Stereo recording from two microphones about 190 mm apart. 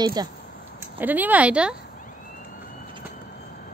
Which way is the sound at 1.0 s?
10° right (ahead or behind).